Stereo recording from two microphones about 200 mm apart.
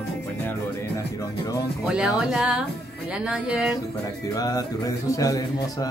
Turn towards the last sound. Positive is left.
turn(degrees=15)  # may be behind; listen again after turning